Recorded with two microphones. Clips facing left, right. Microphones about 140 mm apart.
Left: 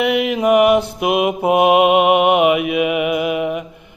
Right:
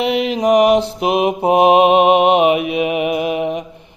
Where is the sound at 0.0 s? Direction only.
30° right (ahead or behind).